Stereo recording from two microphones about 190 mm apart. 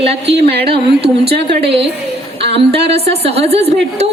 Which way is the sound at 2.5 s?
30° right (ahead or behind).